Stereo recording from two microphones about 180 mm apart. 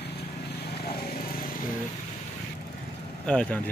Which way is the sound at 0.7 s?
55° left (ahead or behind).